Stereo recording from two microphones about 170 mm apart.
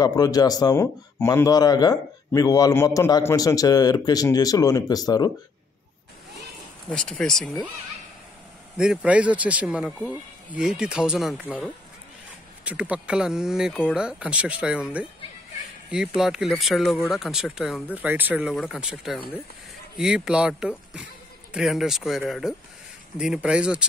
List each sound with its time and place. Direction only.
0.0 s speech: 20° left (ahead or behind)
6.9 s speech: 5° left (ahead or behind)
8.7 s speech: 5° right (ahead or behind)
11.4 s speech: 10° left (ahead or behind)
12.6 s speech: 10° right (ahead or behind)
16.2 s speech: centre (ahead or behind)